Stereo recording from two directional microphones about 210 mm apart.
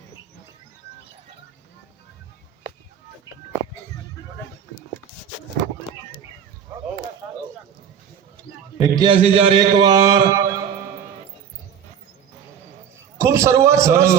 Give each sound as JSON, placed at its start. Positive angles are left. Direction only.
{"t": 7.2, "sound": "a sound", "side_deg": -15}
{"t": 8.8, "sound": "a man's voice", "side_deg": -20}
{"t": 13.1, "sound": "a man's voice", "side_deg": -15}